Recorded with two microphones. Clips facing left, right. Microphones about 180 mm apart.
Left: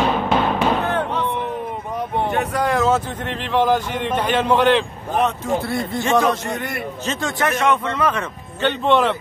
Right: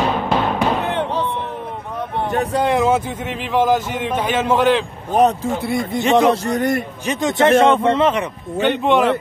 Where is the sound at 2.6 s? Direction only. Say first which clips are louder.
Right 1 dB; 20° right (ahead or behind); by 4.9 s 5° right (ahead or behind).